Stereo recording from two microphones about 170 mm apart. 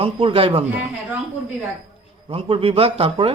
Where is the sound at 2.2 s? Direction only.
30° right (ahead or behind).